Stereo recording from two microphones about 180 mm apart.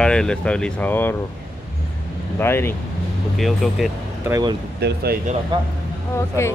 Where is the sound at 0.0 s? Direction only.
5° left (ahead or behind).